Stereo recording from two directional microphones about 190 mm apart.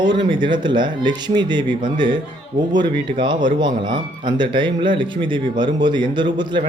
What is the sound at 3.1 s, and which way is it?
Speech, 25° right (ahead or behind).